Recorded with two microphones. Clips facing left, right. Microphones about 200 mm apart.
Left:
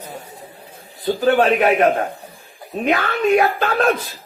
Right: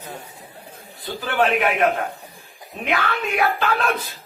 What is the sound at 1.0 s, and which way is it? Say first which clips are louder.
A man's voice: left 6 dB; 40° left (ahead or behind).